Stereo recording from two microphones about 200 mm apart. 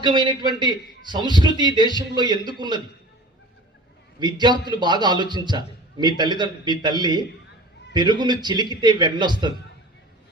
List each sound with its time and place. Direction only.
0.0 s a man's voice: 20° right (ahead or behind)
4.2 s a man's voice: 20° right (ahead or behind)